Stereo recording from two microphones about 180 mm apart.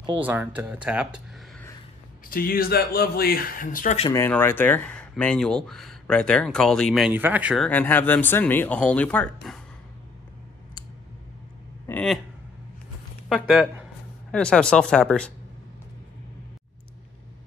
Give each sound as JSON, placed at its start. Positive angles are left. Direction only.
{"t": 0.1, "sound": "speech", "side_deg": -10}
{"t": 2.2, "sound": "speech", "side_deg": 55}
{"t": 4.1, "sound": "speech", "side_deg": 15}
{"t": 11.9, "sound": "a sound", "side_deg": 10}
{"t": 13.3, "sound": "speech", "side_deg": 0}